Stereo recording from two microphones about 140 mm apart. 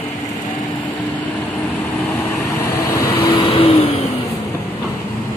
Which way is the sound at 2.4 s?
20° left (ahead or behind).